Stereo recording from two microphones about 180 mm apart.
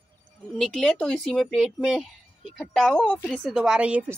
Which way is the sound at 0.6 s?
Centre (ahead or behind).